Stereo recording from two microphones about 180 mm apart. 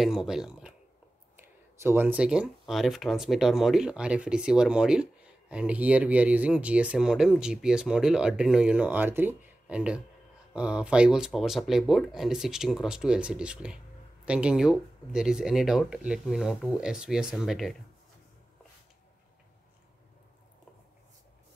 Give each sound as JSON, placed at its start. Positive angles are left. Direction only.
{"t": 0.0, "sound": "speech", "side_deg": 0}